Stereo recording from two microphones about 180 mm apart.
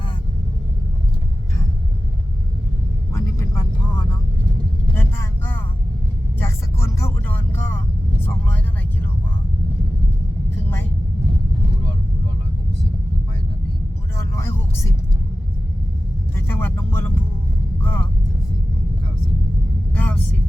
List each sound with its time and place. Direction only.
3.1 s vehicle: 15° left (ahead or behind)
14.2 s vehicle: 15° left (ahead or behind)
16.3 s vehicle: 15° left (ahead or behind)
19.9 s vehicle: 10° left (ahead or behind)